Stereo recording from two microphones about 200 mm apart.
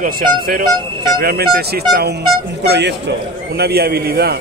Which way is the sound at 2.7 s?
60° right (ahead or behind).